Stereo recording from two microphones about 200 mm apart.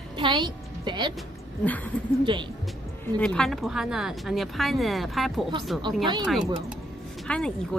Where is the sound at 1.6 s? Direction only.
10° left (ahead or behind).